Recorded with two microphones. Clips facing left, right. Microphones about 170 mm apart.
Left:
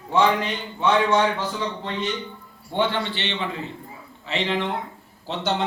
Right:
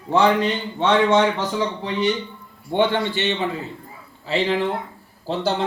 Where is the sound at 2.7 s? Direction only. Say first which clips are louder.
Right 4 dB; 45° right (ahead or behind).